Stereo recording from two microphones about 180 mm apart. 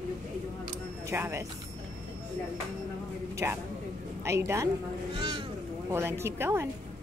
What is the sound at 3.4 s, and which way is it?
Speech, 15° right (ahead or behind).